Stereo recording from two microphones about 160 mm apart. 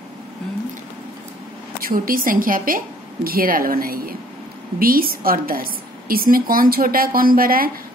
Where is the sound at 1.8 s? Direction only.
65° right (ahead or behind).